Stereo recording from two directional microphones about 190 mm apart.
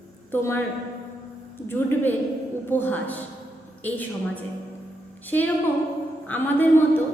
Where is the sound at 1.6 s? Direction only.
10° left (ahead or behind).